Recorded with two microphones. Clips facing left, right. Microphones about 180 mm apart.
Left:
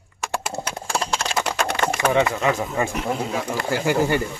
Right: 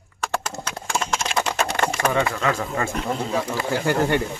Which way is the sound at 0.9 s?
35° left (ahead or behind).